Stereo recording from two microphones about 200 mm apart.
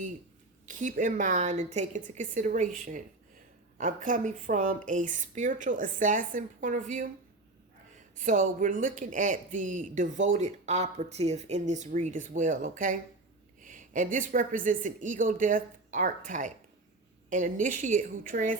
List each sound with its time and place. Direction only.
0.6 s speech: 40° right (ahead or behind)
8.2 s speech: 40° right (ahead or behind)